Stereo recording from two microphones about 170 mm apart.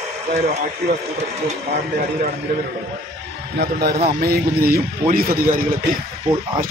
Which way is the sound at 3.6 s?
65° right (ahead or behind).